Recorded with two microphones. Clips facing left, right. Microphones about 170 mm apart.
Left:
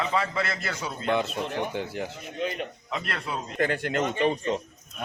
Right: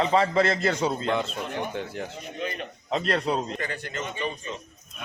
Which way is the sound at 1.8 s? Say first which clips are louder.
Left 1 dB; 5° left (ahead or behind).